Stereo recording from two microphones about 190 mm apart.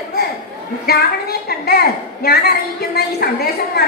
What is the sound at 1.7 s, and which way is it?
A woman's voice, 55° left (ahead or behind).